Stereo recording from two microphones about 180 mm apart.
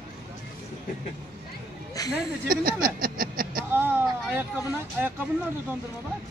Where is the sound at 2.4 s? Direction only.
55° right (ahead or behind).